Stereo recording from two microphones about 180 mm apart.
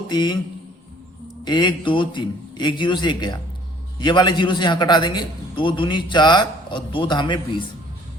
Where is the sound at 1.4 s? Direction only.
25° left (ahead or behind).